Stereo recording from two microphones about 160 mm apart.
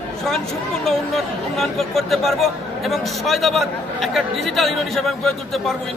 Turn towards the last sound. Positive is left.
turn(degrees=0)  # may be behind; listen again after turning